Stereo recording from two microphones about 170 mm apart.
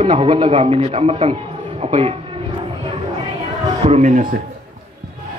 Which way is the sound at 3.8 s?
40° right (ahead or behind).